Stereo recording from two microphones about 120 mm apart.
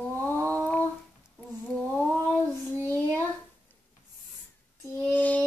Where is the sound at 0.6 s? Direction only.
15° left (ahead or behind).